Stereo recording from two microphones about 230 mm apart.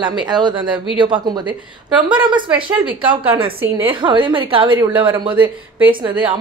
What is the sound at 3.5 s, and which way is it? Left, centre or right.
Speech, centre.